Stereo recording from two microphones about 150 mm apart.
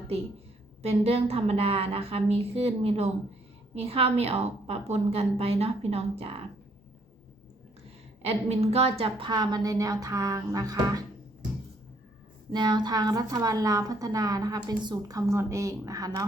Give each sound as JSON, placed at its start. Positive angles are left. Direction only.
{"t": 0.8, "sound": "a woman's voice", "side_deg": -40}
{"t": 8.2, "sound": "a woman's voice", "side_deg": -45}
{"t": 12.5, "sound": "a woman's voice", "side_deg": -30}